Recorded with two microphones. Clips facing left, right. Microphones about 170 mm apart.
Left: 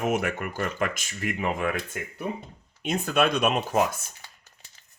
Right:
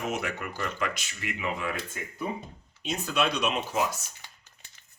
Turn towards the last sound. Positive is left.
turn(degrees=55)  # may be behind; listen again after turning